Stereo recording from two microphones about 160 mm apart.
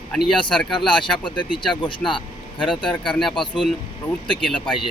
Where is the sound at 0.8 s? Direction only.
30° left (ahead or behind).